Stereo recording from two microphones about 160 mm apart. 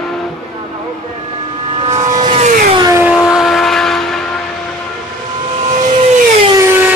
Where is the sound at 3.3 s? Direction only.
Centre (ahead or behind).